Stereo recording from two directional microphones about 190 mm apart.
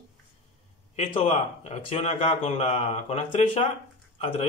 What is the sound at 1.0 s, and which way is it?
Speech, 35° left (ahead or behind).